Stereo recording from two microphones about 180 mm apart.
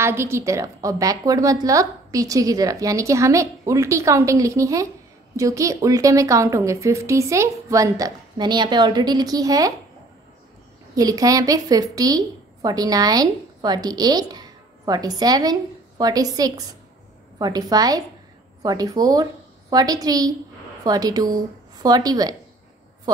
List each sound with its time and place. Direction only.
0.0 s a woman's voice: 15° right (ahead or behind)
11.0 s a woman's voice: 20° right (ahead or behind)